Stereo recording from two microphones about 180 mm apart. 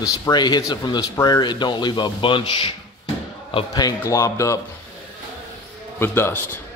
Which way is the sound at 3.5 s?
20° left (ahead or behind).